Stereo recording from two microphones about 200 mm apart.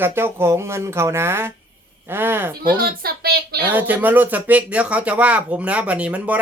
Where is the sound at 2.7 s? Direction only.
50° right (ahead or behind).